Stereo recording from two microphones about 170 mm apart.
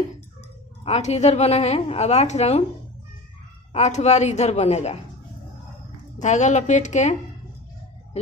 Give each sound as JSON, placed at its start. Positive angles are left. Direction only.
{"t": 0.8, "sound": "a woman's voice", "side_deg": 40}
{"t": 3.7, "sound": "a woman's voice", "side_deg": 40}
{"t": 6.1, "sound": "a woman's voice", "side_deg": 45}